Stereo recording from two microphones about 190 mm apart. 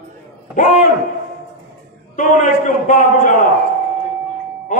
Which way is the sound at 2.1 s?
40° left (ahead or behind).